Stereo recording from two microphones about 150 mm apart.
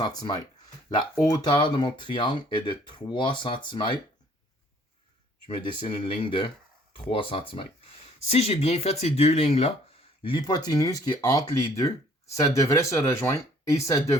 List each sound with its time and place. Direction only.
0.0 s speech: 25° left (ahead or behind)
5.5 s speech: 35° left (ahead or behind)
10.2 s speech: 30° left (ahead or behind)